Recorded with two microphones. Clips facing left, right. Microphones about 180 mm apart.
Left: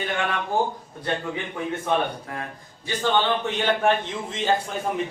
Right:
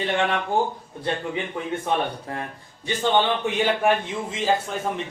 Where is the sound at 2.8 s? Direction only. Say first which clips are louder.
Right 1 dB; 15° right (ahead or behind).